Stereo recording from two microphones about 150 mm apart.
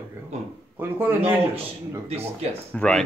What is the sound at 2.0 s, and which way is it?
Speech, 45° right (ahead or behind).